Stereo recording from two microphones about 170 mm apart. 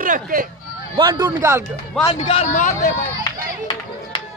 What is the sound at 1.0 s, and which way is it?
Speech, 25° right (ahead or behind).